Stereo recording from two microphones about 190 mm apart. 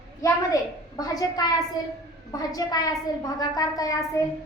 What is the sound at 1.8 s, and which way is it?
A woman's voice, 20° left (ahead or behind).